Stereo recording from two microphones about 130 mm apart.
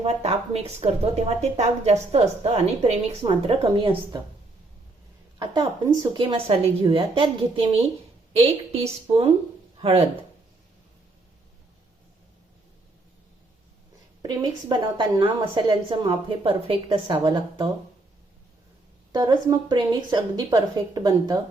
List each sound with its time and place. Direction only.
0.0 s speech: 55° right (ahead or behind); by 4.2 s 40° right (ahead or behind)
5.4 s a woman's voice: 35° right (ahead or behind)
6.2 s speech: 45° right (ahead or behind)
14.2 s a woman's voice: 35° right (ahead or behind)
19.1 s a woman's voice: 30° right (ahead or behind)